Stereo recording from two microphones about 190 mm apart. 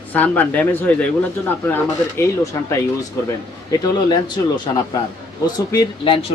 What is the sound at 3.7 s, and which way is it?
Speech, 20° left (ahead or behind).